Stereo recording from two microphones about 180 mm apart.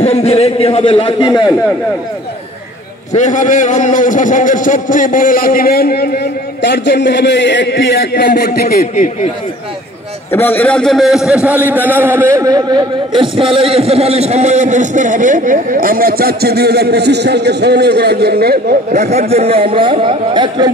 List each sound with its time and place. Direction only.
0.0 s a man's voice: 35° left (ahead or behind)
3.1 s a man's voice: 45° left (ahead or behind)
10.3 s a man's voice: 10° left (ahead or behind); by 18.9 s 60° right (ahead or behind)
18.9 s a man's voice: 35° right (ahead or behind)